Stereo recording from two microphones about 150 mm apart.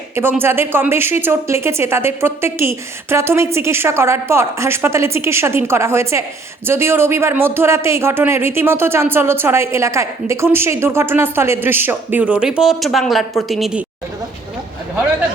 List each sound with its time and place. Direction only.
0.2 s speech: 15° right (ahead or behind)